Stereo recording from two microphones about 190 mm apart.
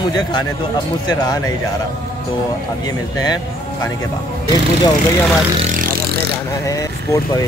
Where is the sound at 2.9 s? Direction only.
20° left (ahead or behind).